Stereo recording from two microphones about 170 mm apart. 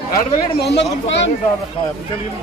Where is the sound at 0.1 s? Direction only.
75° left (ahead or behind).